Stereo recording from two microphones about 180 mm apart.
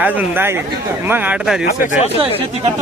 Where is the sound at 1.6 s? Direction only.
45° left (ahead or behind).